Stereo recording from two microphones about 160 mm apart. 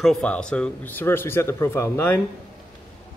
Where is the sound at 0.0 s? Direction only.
5° left (ahead or behind).